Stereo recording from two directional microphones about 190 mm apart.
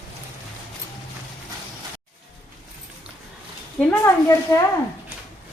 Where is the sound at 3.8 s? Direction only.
5° left (ahead or behind).